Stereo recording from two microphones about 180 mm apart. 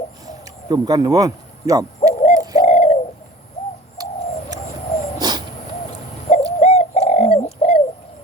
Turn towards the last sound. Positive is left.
turn(degrees=35)  # may be behind; listen again after turning